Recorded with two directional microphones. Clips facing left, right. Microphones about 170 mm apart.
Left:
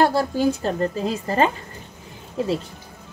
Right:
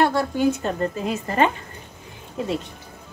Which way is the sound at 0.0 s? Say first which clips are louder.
Left 1 dB; 35° left (ahead or behind).